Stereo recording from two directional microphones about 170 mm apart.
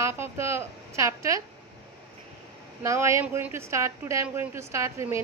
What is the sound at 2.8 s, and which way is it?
Speech, 15° right (ahead or behind).